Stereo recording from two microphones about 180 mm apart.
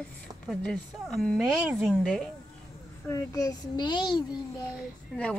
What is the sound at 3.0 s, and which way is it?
A child's voice, 20° left (ahead or behind).